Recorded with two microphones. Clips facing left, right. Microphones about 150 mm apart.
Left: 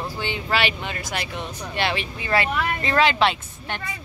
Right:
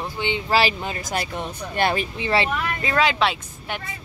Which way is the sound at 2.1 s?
25° right (ahead or behind).